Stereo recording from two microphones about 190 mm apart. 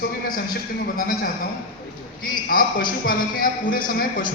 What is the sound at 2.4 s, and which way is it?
A man's voice, 50° left (ahead or behind).